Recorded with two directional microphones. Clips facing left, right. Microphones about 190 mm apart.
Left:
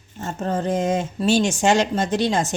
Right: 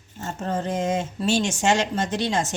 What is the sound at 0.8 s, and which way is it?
Speech, 35° left (ahead or behind).